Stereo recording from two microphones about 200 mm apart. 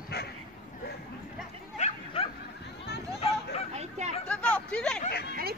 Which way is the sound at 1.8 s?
35° left (ahead or behind).